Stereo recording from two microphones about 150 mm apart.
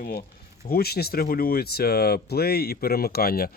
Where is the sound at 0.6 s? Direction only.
90° left.